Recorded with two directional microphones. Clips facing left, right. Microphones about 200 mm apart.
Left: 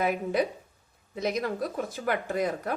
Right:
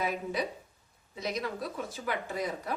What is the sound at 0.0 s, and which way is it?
Speech, 55° left (ahead or behind).